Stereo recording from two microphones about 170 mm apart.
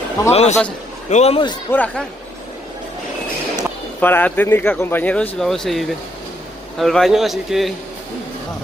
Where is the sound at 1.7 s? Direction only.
10° left (ahead or behind).